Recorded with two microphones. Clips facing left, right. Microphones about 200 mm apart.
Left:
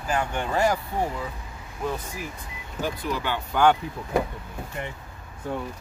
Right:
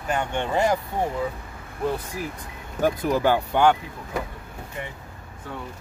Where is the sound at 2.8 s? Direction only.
45° right (ahead or behind).